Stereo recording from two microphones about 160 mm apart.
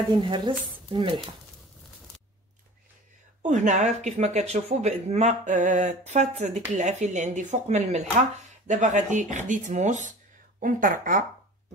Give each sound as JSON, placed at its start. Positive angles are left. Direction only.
{"t": 0.1, "sound": "speech", "side_deg": -25}
{"t": 3.4, "sound": "speech", "side_deg": -50}